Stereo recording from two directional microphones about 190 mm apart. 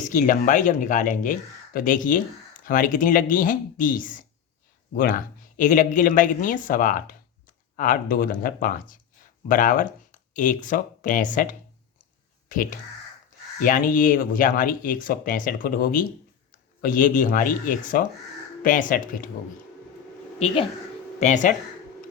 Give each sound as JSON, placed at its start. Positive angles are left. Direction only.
{"t": 0.0, "sound": "speech", "side_deg": 40}
{"t": 21.2, "sound": "speech", "side_deg": 40}